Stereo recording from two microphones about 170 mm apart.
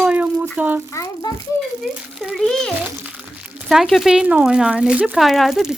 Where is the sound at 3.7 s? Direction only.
Centre (ahead or behind).